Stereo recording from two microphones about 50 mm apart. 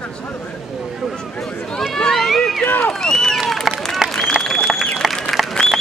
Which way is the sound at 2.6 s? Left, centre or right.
Left.